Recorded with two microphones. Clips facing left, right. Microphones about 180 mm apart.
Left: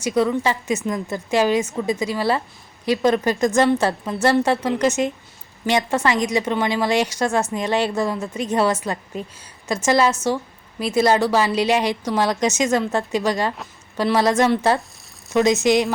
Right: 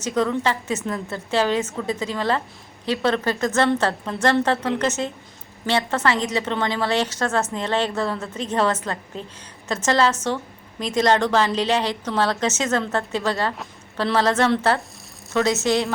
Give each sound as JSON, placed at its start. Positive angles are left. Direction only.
{"t": 0.0, "sound": "a woman's voice", "side_deg": 10}